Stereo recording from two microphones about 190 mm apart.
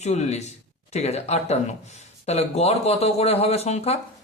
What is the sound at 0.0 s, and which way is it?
Speech, 35° left (ahead or behind).